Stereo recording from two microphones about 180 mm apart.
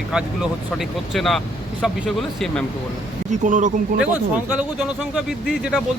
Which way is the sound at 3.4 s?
45° right (ahead or behind).